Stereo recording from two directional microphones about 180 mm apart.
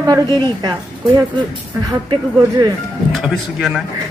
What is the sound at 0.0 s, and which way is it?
A woman's voice, 20° right (ahead or behind).